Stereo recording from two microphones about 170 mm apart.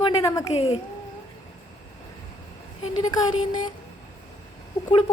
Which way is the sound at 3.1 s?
25° left (ahead or behind).